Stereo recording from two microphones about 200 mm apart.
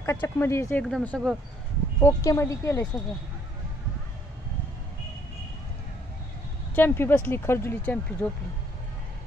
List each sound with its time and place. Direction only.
0.0 s speech: 10° left (ahead or behind)
2.0 s speech: 15° left (ahead or behind)
6.7 s speech: 10° left (ahead or behind)